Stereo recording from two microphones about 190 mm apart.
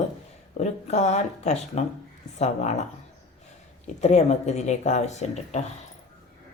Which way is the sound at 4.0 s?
35° left (ahead or behind).